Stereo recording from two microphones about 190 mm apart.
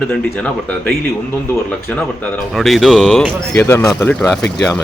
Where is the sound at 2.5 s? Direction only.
Centre (ahead or behind).